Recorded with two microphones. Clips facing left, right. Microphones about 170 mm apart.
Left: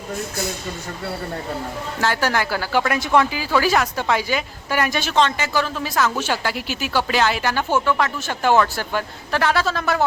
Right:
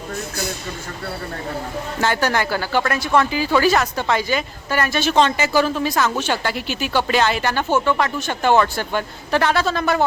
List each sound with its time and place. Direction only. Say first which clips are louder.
2.0 s speech: right 1 dB; 5° left (ahead or behind)
3.3 s speech: right 2 dB; 5° left (ahead or behind)
5.1 s speech: right 3 dB; 10° right (ahead or behind)
5.8 s a woman's voice: right 2 dB; 5° left (ahead or behind)